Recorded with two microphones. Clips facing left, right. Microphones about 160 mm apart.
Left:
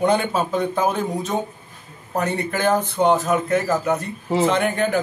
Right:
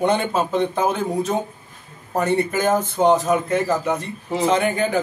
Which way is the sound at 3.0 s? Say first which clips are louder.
Right 1 dB; 20° right (ahead or behind).